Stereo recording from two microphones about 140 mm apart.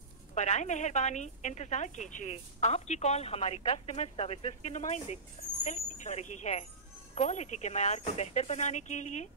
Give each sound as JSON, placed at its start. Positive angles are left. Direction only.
{"t": 0.3, "sound": "a woman's voice", "side_deg": 55}